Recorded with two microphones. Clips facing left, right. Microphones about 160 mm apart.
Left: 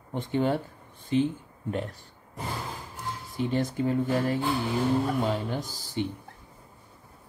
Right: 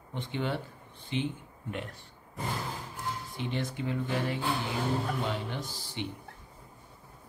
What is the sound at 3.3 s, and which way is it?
Speech, 40° left (ahead or behind).